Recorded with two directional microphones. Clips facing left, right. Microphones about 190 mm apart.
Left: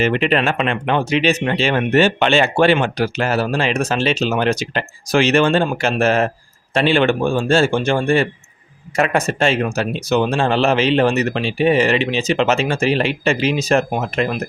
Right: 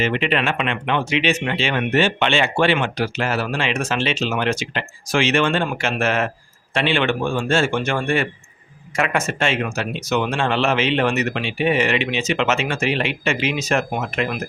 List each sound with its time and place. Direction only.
0.0 s speech: 40° left (ahead or behind)